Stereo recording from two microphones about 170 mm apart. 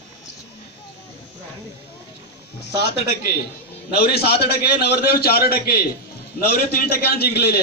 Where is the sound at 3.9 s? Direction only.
65° left (ahead or behind).